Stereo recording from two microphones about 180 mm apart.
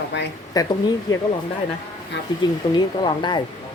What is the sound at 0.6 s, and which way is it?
Speech, 20° left (ahead or behind).